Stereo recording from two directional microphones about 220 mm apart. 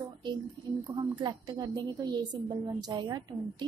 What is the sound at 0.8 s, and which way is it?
A woman's voice, 20° right (ahead or behind).